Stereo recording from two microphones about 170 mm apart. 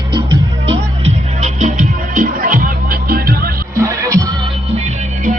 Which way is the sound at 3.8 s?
20° right (ahead or behind).